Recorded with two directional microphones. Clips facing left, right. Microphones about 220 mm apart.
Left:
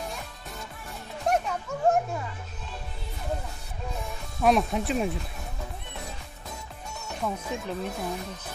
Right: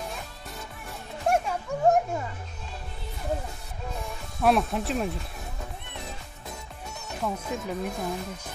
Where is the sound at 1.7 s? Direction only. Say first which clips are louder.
Right 5 dB; 15° right (ahead or behind).